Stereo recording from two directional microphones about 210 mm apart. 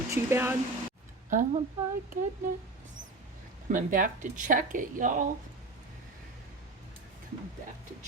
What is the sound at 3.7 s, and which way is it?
Speech, 40° right (ahead or behind).